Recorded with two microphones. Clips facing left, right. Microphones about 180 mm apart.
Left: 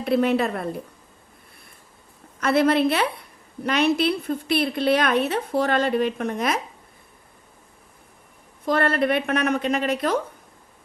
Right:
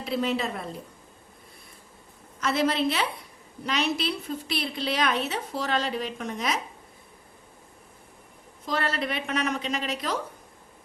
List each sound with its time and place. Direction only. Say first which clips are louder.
0.0 s a woman's voice: left 7 dB; 60° left (ahead or behind)
2.4 s a woman's voice: left 6 dB; 60° left (ahead or behind)
8.6 s a woman's voice: left 8 dB; 55° left (ahead or behind)